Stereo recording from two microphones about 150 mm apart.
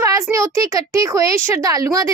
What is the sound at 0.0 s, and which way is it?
A child's voice, 20° right (ahead or behind).